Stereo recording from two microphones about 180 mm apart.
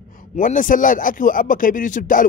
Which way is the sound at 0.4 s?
45° left (ahead or behind).